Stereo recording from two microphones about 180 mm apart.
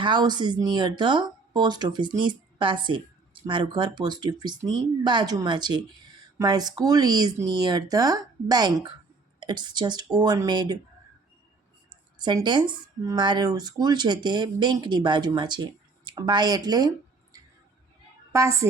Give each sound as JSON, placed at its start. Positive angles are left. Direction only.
{"t": 0.0, "sound": "speech", "side_deg": -25}
{"t": 11.9, "sound": "speech", "side_deg": -25}
{"t": 18.3, "sound": "a woman's voice", "side_deg": -15}